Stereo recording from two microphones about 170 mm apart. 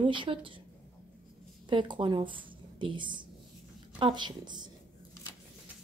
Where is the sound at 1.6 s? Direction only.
25° right (ahead or behind).